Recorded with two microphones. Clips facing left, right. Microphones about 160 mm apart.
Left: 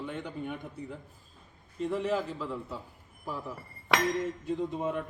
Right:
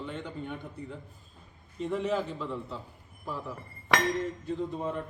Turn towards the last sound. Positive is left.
turn(degrees=10)  # may be behind; listen again after turning